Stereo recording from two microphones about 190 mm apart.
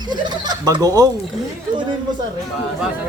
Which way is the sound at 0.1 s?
20° right (ahead or behind).